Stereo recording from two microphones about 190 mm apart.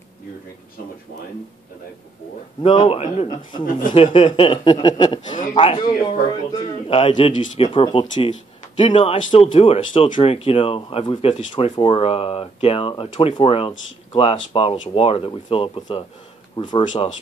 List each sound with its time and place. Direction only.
2.6 s speech: 30° left (ahead or behind)
5.3 s a man's voice: 40° left (ahead or behind)
5.6 s speech: 25° left (ahead or behind)